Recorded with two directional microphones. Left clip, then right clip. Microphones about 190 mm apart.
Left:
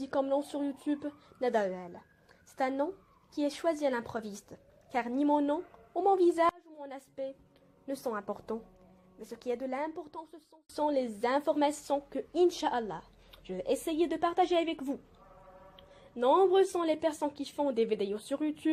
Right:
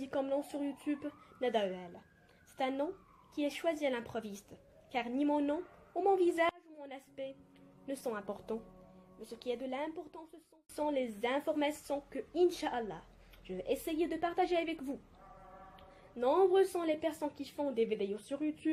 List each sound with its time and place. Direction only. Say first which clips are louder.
0.1 s a woman's voice: left 5 dB; 25° left (ahead or behind)